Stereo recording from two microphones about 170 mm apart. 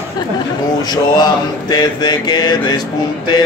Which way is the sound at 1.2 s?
25° left (ahead or behind).